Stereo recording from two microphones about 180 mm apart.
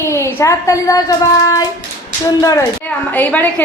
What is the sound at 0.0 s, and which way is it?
A child's voice, 15° left (ahead or behind).